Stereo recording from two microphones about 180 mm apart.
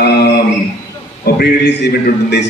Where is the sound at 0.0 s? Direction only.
65° left (ahead or behind).